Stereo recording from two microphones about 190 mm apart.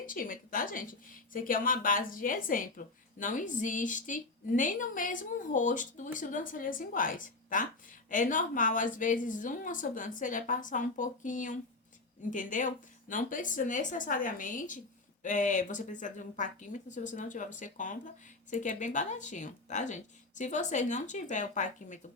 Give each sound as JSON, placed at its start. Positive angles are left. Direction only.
{"t": 0.0, "sound": "a woman's voice", "side_deg": 45}